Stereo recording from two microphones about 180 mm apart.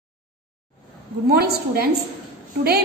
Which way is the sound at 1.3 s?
60° right (ahead or behind).